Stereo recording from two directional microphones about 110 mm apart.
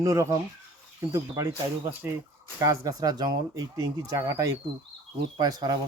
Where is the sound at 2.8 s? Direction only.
35° right (ahead or behind).